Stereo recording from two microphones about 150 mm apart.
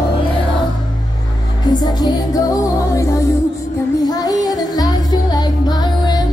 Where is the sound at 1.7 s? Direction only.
25° left (ahead or behind).